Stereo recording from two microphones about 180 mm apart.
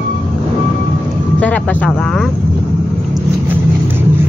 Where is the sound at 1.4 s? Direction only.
10° left (ahead or behind).